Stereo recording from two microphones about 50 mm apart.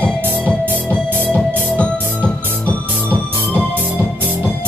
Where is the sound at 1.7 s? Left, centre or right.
Left.